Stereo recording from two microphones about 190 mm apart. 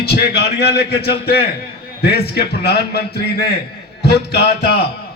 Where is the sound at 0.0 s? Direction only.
60° left (ahead or behind).